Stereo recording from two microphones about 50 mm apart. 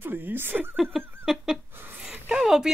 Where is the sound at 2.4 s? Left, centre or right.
Centre.